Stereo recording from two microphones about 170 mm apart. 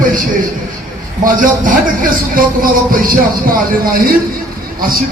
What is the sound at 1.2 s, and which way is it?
A man's voice, 50° right (ahead or behind).